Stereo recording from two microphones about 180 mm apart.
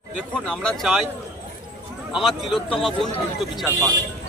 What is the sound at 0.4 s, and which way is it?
Speech, 5° left (ahead or behind).